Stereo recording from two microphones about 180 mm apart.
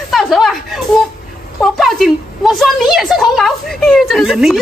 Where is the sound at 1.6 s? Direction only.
Centre (ahead or behind).